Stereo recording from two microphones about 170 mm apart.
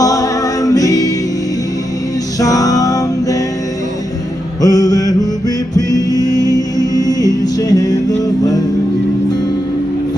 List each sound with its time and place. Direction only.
0.0 s music: 20° left (ahead or behind)
2.4 s music: 20° left (ahead or behind)
4.6 s mantra: 20° left (ahead or behind)
5.8 s music: 20° left (ahead or behind)